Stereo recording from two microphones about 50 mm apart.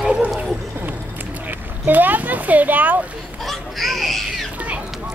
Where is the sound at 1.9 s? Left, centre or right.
Right.